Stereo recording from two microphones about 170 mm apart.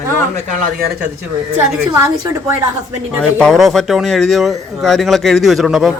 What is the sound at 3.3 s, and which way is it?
Speech, centre (ahead or behind).